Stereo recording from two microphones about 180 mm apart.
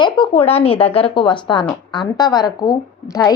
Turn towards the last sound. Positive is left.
turn(degrees=20)  # may be behind; listen again after turning